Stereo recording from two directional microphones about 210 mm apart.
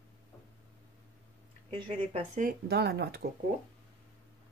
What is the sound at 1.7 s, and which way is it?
Speech, 25° right (ahead or behind).